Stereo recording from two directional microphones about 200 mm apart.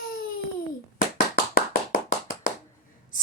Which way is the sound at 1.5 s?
45° left (ahead or behind).